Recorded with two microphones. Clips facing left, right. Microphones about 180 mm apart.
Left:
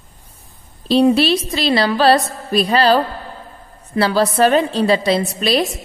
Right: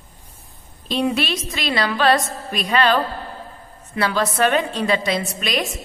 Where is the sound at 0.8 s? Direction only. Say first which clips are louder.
Left 8 dB; 35° left (ahead or behind).